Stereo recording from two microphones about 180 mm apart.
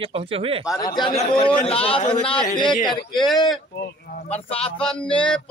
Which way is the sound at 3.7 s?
60° left (ahead or behind).